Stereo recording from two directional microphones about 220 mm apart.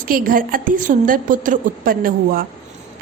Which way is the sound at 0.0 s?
40° right (ahead or behind).